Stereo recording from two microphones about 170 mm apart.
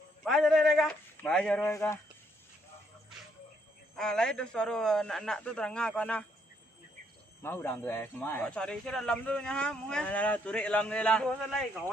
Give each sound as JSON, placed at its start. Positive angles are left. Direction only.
{"t": 0.3, "sound": "speech", "side_deg": 0}
{"t": 1.7, "sound": "speech", "side_deg": 15}
{"t": 3.9, "sound": "speech", "side_deg": 5}
{"t": 7.4, "sound": "speech", "side_deg": 15}